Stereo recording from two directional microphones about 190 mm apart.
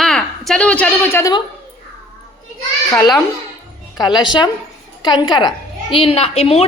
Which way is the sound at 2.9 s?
15° left (ahead or behind).